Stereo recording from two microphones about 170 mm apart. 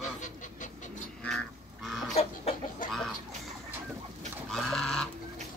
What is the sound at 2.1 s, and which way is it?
Chicken, 40° left (ahead or behind).